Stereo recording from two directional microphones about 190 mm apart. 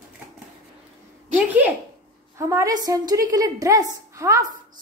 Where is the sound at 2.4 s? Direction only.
15° right (ahead or behind).